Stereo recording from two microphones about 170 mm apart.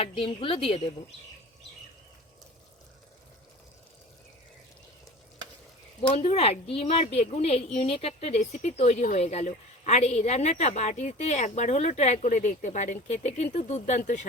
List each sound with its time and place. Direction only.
0.0 s speech: 35° left (ahead or behind)
6.0 s speech: 35° left (ahead or behind)